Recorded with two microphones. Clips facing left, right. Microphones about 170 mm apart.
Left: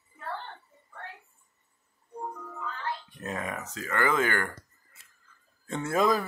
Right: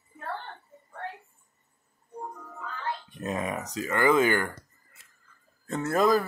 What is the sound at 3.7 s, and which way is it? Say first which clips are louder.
Speech: right 4 dB; 15° right (ahead or behind).